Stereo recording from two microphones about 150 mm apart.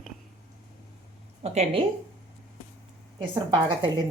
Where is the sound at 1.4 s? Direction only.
45° right (ahead or behind).